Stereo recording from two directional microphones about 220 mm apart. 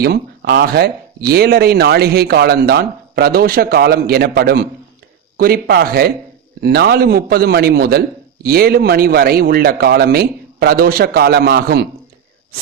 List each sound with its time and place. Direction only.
0.0 s speech: 45° right (ahead or behind)